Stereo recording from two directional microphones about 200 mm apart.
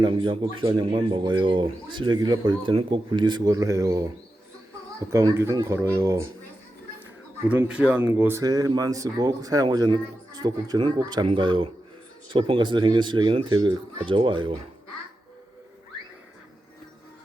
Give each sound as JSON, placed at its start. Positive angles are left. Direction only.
{"t": 0.0, "sound": "speech", "side_deg": -25}
{"t": 5.1, "sound": "speech", "side_deg": -15}
{"t": 7.4, "sound": "speech", "side_deg": -5}